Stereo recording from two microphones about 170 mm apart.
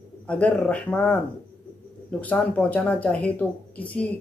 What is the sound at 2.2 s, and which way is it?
Speech, 5° left (ahead or behind).